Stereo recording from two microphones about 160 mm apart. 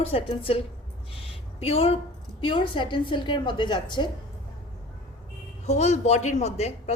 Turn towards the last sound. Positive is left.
turn(degrees=45)  # may be behind; listen again after turning